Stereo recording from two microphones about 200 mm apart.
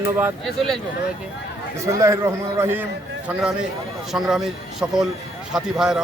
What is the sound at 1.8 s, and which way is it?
A man's voice, 15° right (ahead or behind).